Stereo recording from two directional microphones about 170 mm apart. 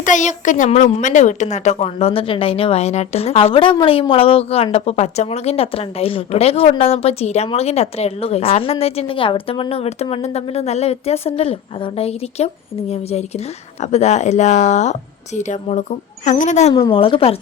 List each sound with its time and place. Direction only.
0.0 s a woman's voice: 45° left (ahead or behind)
16.7 s a woman's voice: 30° left (ahead or behind)